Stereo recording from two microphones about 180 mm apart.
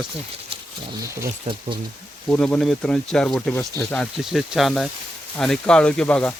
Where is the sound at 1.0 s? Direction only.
15° right (ahead or behind).